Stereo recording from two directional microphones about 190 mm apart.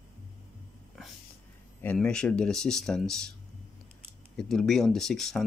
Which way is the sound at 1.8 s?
5° left (ahead or behind).